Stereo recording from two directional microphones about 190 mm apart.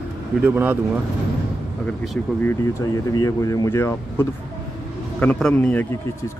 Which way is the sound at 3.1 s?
20° left (ahead or behind).